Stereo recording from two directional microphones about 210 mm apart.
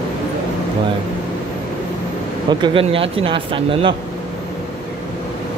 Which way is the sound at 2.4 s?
25° right (ahead or behind).